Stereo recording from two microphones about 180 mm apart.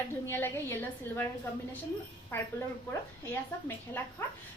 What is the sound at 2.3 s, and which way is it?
Speech, 10° left (ahead or behind).